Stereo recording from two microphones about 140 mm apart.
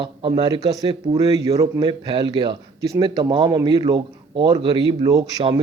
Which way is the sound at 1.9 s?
35° right (ahead or behind).